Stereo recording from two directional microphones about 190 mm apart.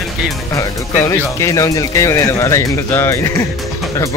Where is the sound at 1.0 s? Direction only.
15° left (ahead or behind).